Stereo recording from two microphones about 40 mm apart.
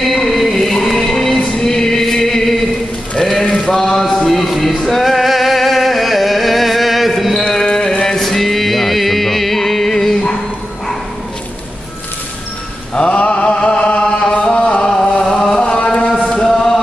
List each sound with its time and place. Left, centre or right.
0.0 s music: centre
1.6 s choir: centre
3.2 s sheep: centre
3.6 s a sound: centre
7.4 s carnatic music: centre
8.2 s music: centre
12.9 s chant: left; by 15.4 s centre
16.4 s chant: centre